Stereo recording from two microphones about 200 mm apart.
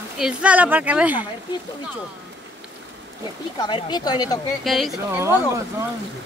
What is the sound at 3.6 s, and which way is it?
Speech, 20° left (ahead or behind).